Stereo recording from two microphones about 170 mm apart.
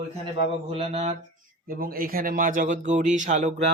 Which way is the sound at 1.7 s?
60° right (ahead or behind).